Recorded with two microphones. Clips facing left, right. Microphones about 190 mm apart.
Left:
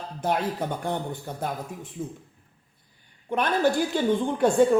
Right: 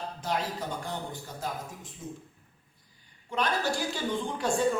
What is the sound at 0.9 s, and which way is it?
A woman's voice, 60° left (ahead or behind).